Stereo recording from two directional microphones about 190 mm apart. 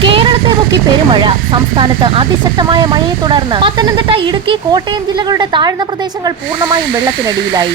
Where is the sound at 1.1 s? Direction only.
25° right (ahead or behind).